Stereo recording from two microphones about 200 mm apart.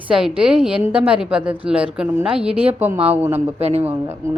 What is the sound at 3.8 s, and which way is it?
Speech, 10° right (ahead or behind).